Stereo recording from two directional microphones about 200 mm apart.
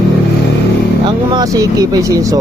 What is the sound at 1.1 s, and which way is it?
Speech, 20° right (ahead or behind).